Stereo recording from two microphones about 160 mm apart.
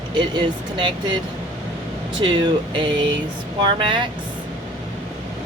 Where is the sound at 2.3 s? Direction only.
30° right (ahead or behind).